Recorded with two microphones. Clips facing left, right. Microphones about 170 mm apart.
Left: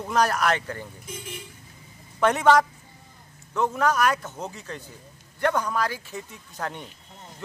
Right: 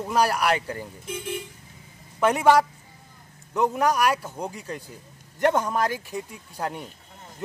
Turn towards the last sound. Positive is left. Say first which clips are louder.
# right 2 dB
turn(degrees=-10)  # may be behind; listen again after turning